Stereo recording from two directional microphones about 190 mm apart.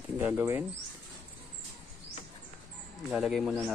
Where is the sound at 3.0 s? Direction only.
Centre (ahead or behind).